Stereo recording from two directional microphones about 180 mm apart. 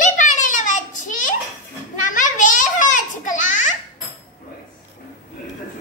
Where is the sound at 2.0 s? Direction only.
45° left (ahead or behind).